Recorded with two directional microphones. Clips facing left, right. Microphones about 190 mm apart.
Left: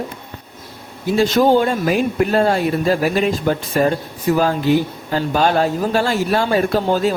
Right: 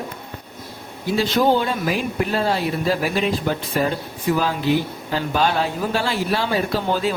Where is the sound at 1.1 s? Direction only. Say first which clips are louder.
Left 4 dB; 45° left (ahead or behind).